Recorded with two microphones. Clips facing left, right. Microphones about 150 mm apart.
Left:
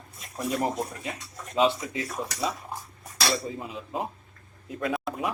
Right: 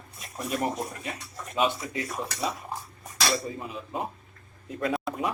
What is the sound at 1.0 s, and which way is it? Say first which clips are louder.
Speech: even; 20° left (ahead or behind).